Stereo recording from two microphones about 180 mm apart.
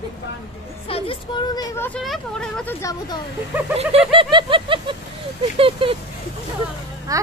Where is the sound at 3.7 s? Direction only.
30° right (ahead or behind).